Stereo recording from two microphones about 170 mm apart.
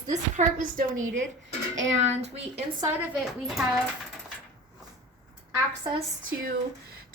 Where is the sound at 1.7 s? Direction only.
90° right.